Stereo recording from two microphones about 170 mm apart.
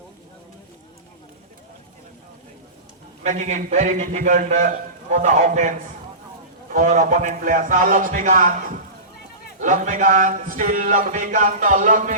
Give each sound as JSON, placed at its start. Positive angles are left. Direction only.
{"t": 3.2, "sound": "speech", "side_deg": -45}
{"t": 9.6, "sound": "speech", "side_deg": -50}